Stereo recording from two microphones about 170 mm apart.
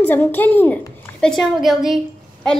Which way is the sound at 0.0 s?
10° left (ahead or behind).